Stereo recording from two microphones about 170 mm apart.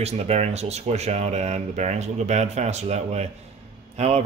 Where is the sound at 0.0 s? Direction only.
40° right (ahead or behind).